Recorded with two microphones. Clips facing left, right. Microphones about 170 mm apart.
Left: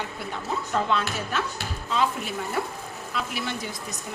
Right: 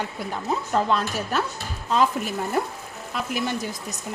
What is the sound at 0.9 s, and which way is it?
Speech, 40° right (ahead or behind).